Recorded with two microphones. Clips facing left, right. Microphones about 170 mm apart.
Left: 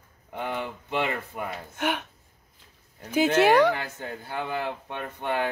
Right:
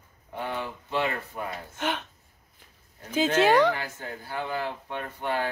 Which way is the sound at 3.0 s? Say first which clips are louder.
Left 2 dB; 10° left (ahead or behind).